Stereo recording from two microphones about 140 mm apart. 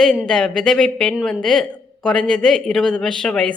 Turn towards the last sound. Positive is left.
turn(degrees=5)  # may be behind; listen again after turning